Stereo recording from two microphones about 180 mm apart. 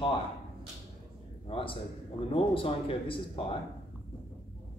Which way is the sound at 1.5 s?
30° left (ahead or behind).